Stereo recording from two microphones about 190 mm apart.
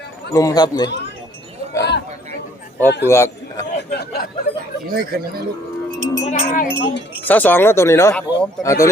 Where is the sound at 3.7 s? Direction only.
60° left (ahead or behind).